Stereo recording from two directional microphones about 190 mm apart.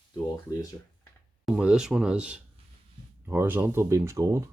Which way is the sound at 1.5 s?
5° right (ahead or behind).